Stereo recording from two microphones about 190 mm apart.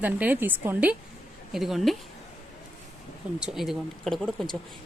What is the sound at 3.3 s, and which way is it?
Speech, 5° right (ahead or behind).